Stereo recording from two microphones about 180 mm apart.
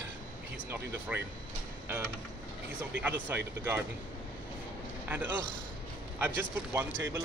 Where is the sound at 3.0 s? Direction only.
10° right (ahead or behind).